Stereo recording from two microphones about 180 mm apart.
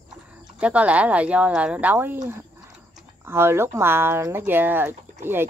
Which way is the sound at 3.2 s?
15° right (ahead or behind).